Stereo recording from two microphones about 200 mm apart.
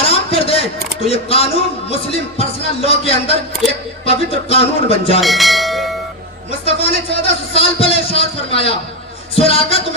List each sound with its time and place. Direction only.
0.0 s a sound: 30° left (ahead or behind)
1.0 s speech: 30° left (ahead or behind)
5.2 s bell: centre (ahead or behind)
6.7 s a man's voice: 30° left (ahead or behind)